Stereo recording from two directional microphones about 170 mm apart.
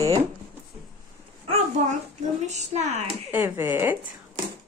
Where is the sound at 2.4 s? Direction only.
40° right (ahead or behind).